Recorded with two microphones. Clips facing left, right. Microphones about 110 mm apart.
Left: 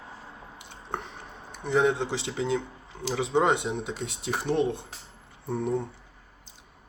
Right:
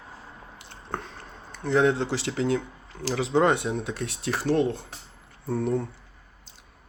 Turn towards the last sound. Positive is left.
turn(degrees=20)  # may be behind; listen again after turning